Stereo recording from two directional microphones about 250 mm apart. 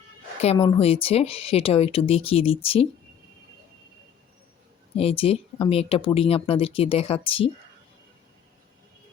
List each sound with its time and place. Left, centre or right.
0.4 s speech: left
4.9 s speech: left